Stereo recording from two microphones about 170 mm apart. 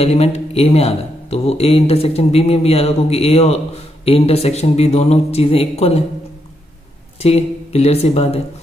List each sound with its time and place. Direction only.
0.0 s speech: 40° left (ahead or behind)
7.2 s speech: 40° left (ahead or behind)